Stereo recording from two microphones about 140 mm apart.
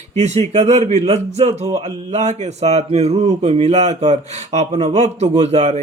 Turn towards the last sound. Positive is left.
turn(degrees=-55)  # may be behind; listen again after turning